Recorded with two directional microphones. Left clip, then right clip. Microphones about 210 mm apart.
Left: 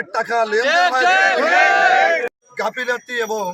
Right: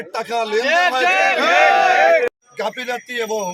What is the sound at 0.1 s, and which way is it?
Speech, 5° left (ahead or behind).